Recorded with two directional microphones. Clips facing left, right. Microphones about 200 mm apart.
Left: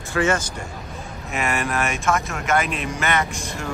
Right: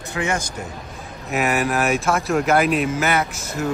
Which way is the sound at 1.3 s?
5° right (ahead or behind).